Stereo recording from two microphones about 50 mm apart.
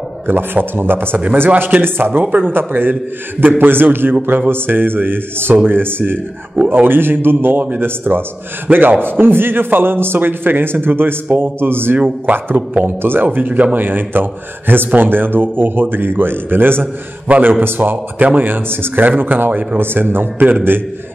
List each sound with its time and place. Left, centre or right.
0.3 s a man's voice: right